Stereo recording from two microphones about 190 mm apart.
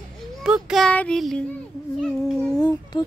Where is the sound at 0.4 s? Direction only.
5° right (ahead or behind).